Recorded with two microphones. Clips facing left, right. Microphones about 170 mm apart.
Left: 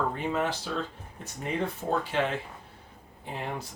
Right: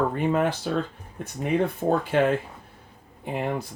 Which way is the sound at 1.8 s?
50° right (ahead or behind).